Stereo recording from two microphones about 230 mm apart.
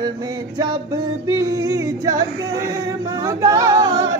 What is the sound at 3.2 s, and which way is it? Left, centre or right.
Music, centre.